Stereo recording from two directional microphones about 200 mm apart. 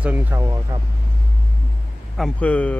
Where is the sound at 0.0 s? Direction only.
10° right (ahead or behind).